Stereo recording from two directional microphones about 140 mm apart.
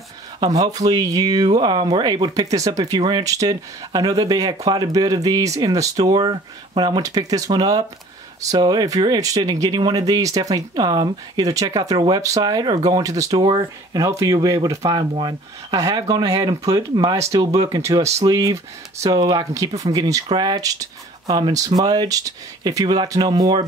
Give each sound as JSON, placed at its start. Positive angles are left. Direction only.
{"t": 0.4, "sound": "speech", "side_deg": -25}